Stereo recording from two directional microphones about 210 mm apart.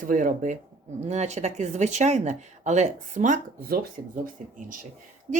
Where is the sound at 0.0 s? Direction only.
40° right (ahead or behind).